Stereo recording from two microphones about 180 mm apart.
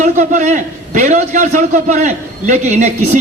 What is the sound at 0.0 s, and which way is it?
A man's voice, 40° right (ahead or behind).